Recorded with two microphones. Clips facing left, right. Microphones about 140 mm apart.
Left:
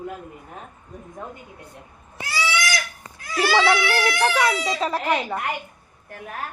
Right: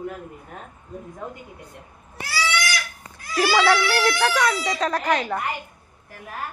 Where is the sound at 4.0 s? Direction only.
Centre (ahead or behind).